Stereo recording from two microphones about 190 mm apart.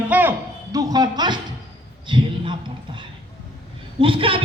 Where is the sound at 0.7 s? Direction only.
20° right (ahead or behind).